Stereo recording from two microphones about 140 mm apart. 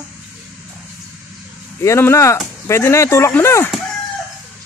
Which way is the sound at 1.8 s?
20° left (ahead or behind).